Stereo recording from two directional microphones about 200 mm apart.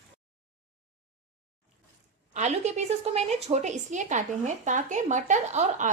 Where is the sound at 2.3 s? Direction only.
35° right (ahead or behind).